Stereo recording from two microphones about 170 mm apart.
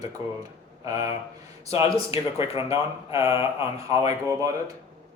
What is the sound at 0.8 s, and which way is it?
Speech, 20° right (ahead or behind).